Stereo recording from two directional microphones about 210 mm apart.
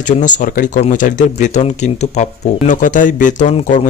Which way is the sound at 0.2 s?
35° left (ahead or behind).